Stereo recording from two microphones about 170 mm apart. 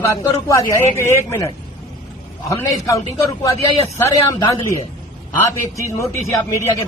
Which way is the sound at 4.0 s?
20° left (ahead or behind).